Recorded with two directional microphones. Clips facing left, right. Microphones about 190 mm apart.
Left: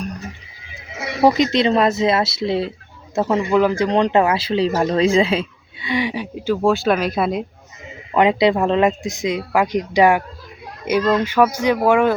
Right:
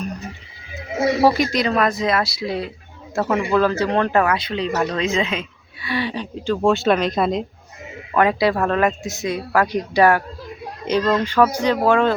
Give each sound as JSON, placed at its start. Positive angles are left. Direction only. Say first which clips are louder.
{"t": 1.2, "sound": "speech", "louder": "left 6 dB", "side_deg": 20}
{"t": 5.8, "sound": "a woman's voice", "louder": "left 2 dB", "side_deg": 15}
{"t": 8.1, "sound": "speech", "louder": "left 2 dB", "side_deg": 20}